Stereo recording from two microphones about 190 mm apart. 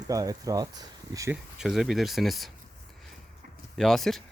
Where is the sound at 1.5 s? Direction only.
Centre (ahead or behind).